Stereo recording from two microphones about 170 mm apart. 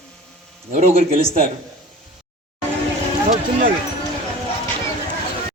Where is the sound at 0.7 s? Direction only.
40° right (ahead or behind).